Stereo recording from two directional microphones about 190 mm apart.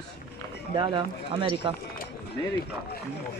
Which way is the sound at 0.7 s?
25° right (ahead or behind).